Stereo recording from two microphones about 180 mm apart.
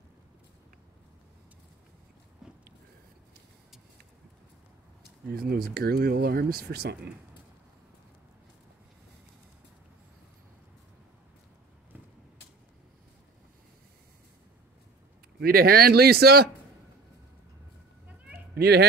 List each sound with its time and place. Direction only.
2.4 s a sound: 5° right (ahead or behind)
5.3 s speech: 55° right (ahead or behind)
15.4 s speech: 55° right (ahead or behind)
18.5 s a child's voice: 65° right (ahead or behind)